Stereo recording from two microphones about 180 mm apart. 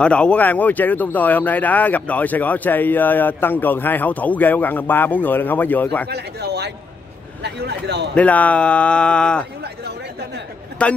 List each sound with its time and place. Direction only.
0.0 s speech: 5° left (ahead or behind)
6.0 s speech: 65° right (ahead or behind)
8.1 s speech: 5° left (ahead or behind)
10.8 s speech: 5° left (ahead or behind)